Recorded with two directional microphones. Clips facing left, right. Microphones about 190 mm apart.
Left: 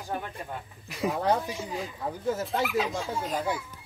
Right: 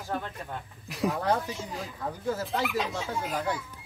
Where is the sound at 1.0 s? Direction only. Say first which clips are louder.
Even; 5° left (ahead or behind).